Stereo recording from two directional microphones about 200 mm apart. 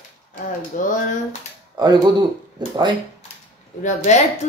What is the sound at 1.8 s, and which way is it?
Speech, 20° right (ahead or behind).